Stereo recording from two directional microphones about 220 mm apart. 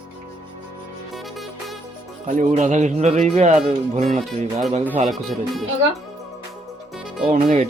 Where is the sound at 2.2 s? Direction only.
35° right (ahead or behind).